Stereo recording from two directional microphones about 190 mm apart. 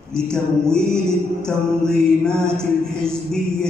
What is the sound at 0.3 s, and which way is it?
Mantra, 5° left (ahead or behind).